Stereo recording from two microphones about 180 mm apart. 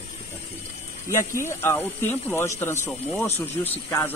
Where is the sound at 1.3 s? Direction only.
15° left (ahead or behind).